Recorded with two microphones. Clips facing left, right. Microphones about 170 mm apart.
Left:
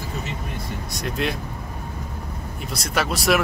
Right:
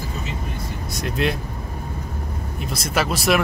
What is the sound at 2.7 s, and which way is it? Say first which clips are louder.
Speech: right 2 dB; centre (ahead or behind).